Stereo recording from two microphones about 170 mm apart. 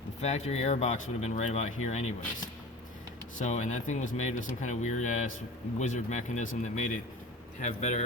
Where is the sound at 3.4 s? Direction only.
45° left (ahead or behind).